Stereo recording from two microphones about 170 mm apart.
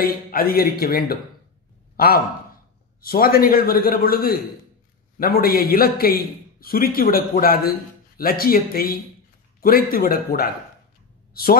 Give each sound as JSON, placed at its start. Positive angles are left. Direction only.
{"t": 0.0, "sound": "a man's voice", "side_deg": 60}